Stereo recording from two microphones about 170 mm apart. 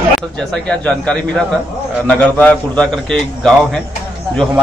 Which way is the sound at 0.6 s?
5° left (ahead or behind).